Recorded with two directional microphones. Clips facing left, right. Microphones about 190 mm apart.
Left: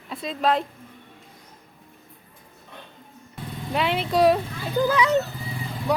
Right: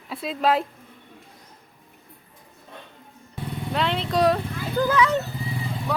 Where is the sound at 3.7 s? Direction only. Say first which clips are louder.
Left 2 dB; 10° left (ahead or behind).